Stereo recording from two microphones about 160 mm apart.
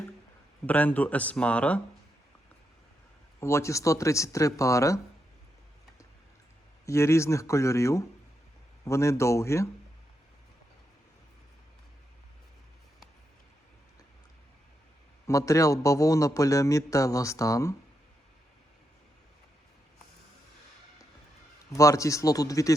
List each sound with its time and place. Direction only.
0.7 s speech: 10° left (ahead or behind)
3.4 s a man's voice: 15° left (ahead or behind)
6.8 s a man's voice: 15° left (ahead or behind)
15.3 s a man's voice: 20° left (ahead or behind)
21.7 s a man's voice: 20° left (ahead or behind)